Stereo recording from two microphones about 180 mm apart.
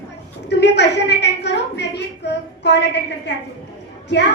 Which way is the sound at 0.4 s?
70° left (ahead or behind).